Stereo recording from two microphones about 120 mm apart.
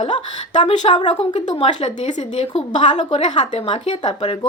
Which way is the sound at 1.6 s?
65° left (ahead or behind).